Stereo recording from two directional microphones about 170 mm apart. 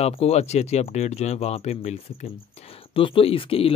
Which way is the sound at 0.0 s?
35° left (ahead or behind).